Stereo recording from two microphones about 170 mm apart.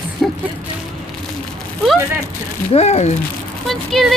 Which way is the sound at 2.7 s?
40° left (ahead or behind).